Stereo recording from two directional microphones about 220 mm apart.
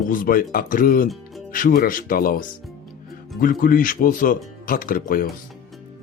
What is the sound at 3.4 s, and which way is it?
Speech, 40° left (ahead or behind).